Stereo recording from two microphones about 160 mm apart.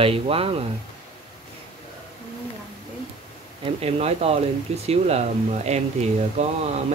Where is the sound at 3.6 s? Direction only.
40° right (ahead or behind).